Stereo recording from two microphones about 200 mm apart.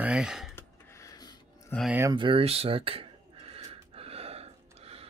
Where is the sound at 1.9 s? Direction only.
15° right (ahead or behind).